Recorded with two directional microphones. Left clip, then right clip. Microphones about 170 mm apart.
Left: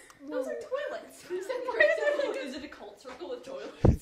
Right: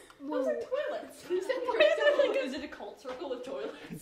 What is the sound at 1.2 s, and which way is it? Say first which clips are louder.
Chuckle: right 2 dB; 45° right (ahead or behind).